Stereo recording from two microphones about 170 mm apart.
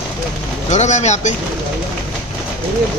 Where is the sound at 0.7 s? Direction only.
40° left (ahead or behind).